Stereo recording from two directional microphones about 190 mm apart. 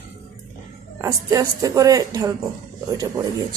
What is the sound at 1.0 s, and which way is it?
A woman's voice, 20° right (ahead or behind).